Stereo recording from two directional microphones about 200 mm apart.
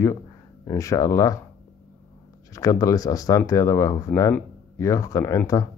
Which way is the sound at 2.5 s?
15° left (ahead or behind).